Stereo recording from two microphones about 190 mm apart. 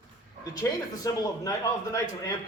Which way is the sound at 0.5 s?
20° left (ahead or behind).